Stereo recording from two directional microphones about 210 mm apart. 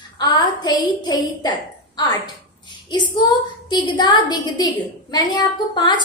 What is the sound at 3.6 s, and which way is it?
A woman's voice, 20° left (ahead or behind).